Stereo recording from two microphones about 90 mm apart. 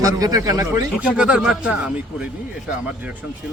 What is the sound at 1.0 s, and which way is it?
Speech, 10° right (ahead or behind).